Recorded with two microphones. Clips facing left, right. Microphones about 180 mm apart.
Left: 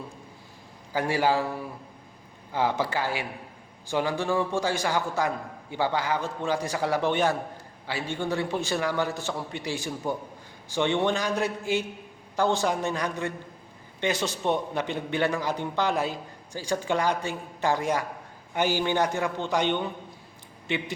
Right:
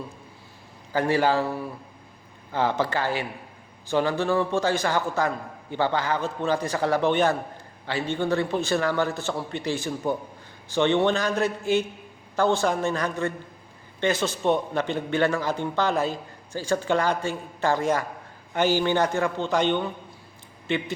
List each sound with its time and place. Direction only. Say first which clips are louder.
0.9 s a man's voice: right 3 dB; 10° left (ahead or behind)
2.5 s a man's voice: right 2 dB; 10° left (ahead or behind)